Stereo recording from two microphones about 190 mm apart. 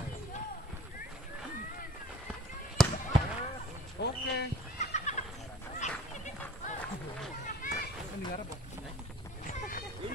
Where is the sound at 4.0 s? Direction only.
65° left (ahead or behind).